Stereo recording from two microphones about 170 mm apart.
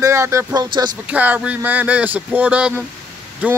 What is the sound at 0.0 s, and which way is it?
Speech, 15° right (ahead or behind).